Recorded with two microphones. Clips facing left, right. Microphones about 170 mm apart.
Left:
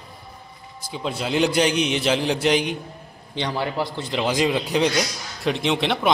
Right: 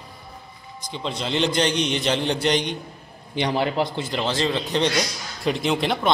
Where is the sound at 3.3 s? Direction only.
20° right (ahead or behind).